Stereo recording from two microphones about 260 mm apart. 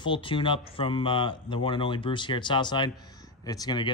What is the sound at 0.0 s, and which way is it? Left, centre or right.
Speech, centre.